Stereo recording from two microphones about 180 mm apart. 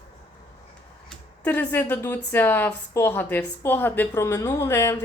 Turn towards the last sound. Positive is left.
turn(degrees=15)  # may be behind; listen again after turning